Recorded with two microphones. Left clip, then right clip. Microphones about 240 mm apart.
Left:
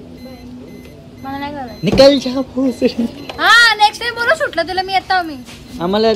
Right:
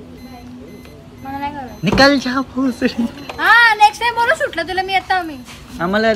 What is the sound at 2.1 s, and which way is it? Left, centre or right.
Speech, right.